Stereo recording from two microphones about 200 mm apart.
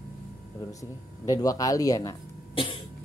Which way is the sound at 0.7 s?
15° left (ahead or behind).